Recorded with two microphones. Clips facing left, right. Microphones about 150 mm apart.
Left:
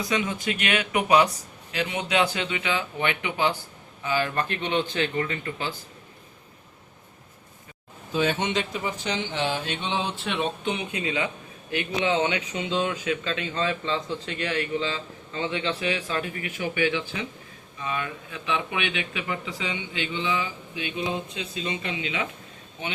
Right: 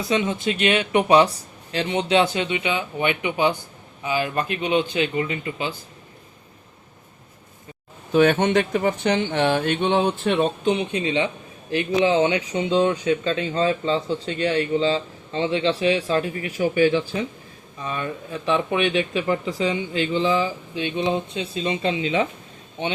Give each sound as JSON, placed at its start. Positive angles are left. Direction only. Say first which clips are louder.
{"t": 0.1, "sound": "speech", "louder": "right 7 dB", "side_deg": -25}
{"t": 8.1, "sound": "speech", "louder": "right 8 dB", "side_deg": -60}